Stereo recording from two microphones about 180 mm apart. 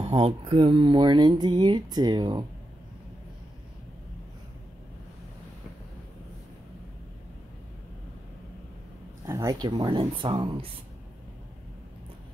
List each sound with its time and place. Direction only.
0.0 s speech: 30° right (ahead or behind)
9.2 s speech: 20° right (ahead or behind)